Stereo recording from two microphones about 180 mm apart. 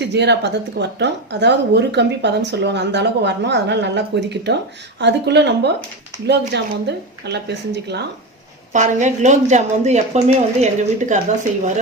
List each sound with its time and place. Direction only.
0.0 s a woman's voice: 70° right (ahead or behind)
8.7 s speech: 40° right (ahead or behind)